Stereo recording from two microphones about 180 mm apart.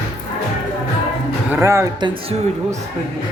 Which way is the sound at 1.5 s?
15° right (ahead or behind).